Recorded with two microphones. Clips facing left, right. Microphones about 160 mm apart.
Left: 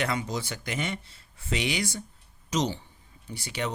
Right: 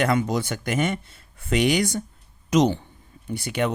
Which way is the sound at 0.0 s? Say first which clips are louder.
Right 8 dB; 55° right (ahead or behind).